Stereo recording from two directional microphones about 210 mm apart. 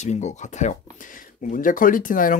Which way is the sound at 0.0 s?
35° left (ahead or behind).